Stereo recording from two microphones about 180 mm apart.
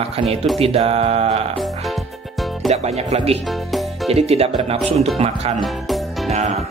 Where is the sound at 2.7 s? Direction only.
35° right (ahead or behind).